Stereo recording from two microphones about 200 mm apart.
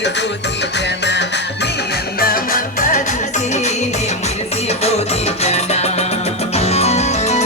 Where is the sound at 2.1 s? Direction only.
45° left (ahead or behind).